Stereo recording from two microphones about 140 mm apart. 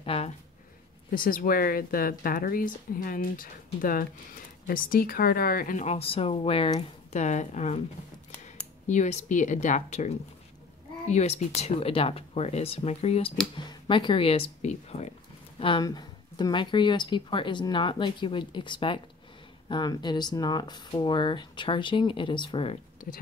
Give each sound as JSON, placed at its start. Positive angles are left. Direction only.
{"t": 0.0, "sound": "a sound", "side_deg": 45}
{"t": 1.1, "sound": "a woman's voice", "side_deg": 90}
{"t": 5.9, "sound": "speech", "side_deg": 45}
{"t": 7.1, "sound": "speech", "side_deg": 55}
{"t": 8.8, "sound": "speech", "side_deg": 60}
{"t": 13.6, "sound": "speech", "side_deg": 35}
{"t": 15.6, "sound": "speech", "side_deg": 30}
{"t": 23.0, "sound": "speech", "side_deg": 70}